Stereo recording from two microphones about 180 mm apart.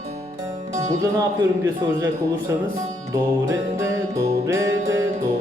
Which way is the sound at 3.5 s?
15° right (ahead or behind).